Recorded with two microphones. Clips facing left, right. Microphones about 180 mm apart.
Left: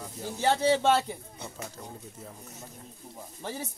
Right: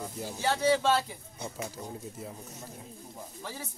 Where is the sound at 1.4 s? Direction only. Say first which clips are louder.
Right 3 dB; 10° right (ahead or behind).